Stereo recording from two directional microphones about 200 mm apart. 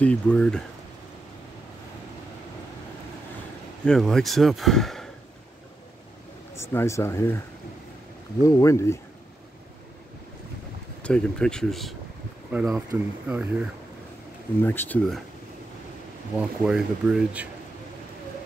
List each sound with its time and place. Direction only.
0.0 s speech: 5° left (ahead or behind)
3.8 s speech: centre (ahead or behind)
6.5 s speech: 10° left (ahead or behind)
8.4 s speech: 15° left (ahead or behind)
11.0 s speech: 5° left (ahead or behind)
14.6 s speech: 10° left (ahead or behind)
16.3 s speech: 5° right (ahead or behind)